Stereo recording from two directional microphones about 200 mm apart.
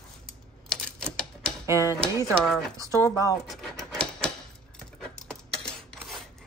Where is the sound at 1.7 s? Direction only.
15° right (ahead or behind).